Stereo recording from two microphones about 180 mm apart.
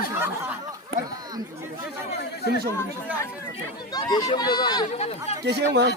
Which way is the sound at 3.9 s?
20° left (ahead or behind).